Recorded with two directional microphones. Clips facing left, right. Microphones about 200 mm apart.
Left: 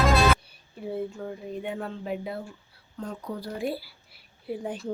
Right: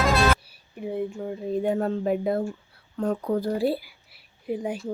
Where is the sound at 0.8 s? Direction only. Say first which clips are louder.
Right 3 dB; 15° right (ahead or behind).